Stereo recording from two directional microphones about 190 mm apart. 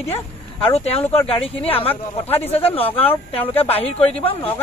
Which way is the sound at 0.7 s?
30° left (ahead or behind).